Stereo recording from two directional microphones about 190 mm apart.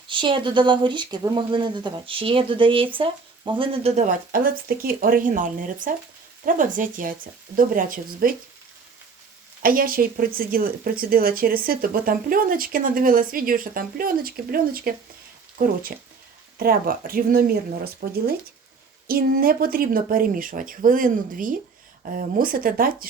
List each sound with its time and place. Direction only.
0.1 s speech: 25° right (ahead or behind); by 8.4 s 45° right (ahead or behind)
9.6 s speech: 50° right (ahead or behind)